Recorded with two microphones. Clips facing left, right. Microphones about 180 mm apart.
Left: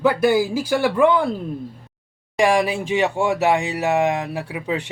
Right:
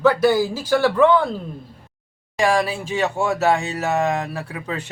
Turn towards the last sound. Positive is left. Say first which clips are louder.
# left 3 dB
turn(degrees=15)  # may be behind; listen again after turning